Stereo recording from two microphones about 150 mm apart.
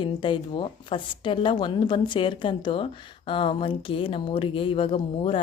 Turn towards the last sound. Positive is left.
turn(degrees=40)  # may be behind; listen again after turning